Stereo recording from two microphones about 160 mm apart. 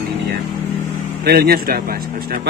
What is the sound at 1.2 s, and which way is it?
A man's voice, 75° right (ahead or behind).